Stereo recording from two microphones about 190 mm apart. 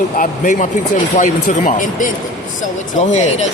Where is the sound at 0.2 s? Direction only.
40° left (ahead or behind).